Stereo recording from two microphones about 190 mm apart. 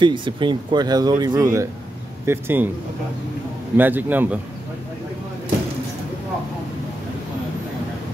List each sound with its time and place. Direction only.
0.0 s a man's voice: 25° right (ahead or behind)
3.7 s a man's voice: 10° right (ahead or behind)